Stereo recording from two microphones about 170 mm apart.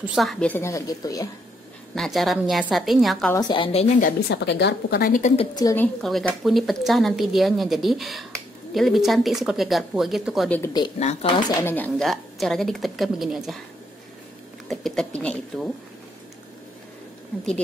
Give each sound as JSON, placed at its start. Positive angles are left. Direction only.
{"t": 0.0, "sound": "a woman's voice", "side_deg": 0}
{"t": 2.0, "sound": "a woman's voice", "side_deg": 0}
{"t": 3.3, "sound": "a woman's voice", "side_deg": 25}
{"t": 3.8, "sound": "speech", "side_deg": 45}
{"t": 4.3, "sound": "speech", "side_deg": 85}
{"t": 5.5, "sound": "a woman's voice", "side_deg": 20}
{"t": 6.0, "sound": "a woman's voice", "side_deg": 0}
{"t": 11.0, "sound": "speech", "side_deg": 35}
{"t": 11.6, "sound": "a woman's voice", "side_deg": 10}
{"t": 14.7, "sound": "a woman's voice", "side_deg": 0}